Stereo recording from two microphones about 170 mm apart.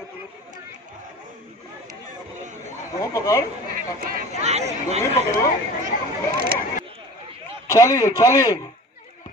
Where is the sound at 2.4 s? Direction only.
45° right (ahead or behind).